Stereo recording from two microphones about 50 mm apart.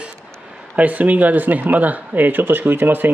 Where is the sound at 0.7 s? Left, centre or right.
Right.